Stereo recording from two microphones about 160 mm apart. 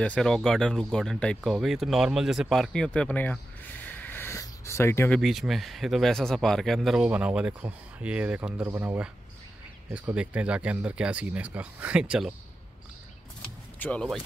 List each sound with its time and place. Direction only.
0.0 s speech: 5° left (ahead or behind)
5.1 s speech: centre (ahead or behind)
13.4 s vehicle: 10° left (ahead or behind)